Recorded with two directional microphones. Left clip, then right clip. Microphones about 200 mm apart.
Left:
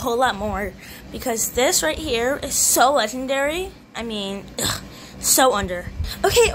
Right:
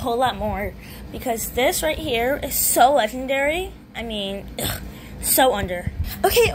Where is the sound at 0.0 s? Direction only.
10° left (ahead or behind).